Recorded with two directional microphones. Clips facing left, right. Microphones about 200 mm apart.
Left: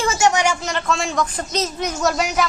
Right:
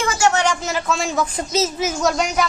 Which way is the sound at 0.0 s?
25° left (ahead or behind).